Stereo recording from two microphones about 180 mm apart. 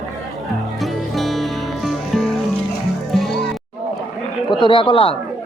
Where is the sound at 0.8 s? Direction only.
Centre (ahead or behind).